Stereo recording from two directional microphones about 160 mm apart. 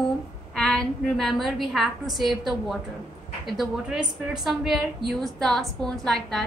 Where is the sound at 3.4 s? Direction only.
5° right (ahead or behind).